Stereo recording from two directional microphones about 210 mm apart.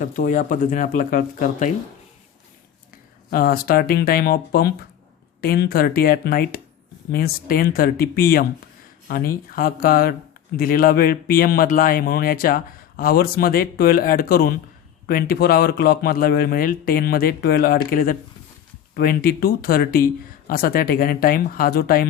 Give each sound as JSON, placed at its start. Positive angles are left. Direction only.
{"t": 0.0, "sound": "speech", "side_deg": 40}
{"t": 2.9, "sound": "speech", "side_deg": 45}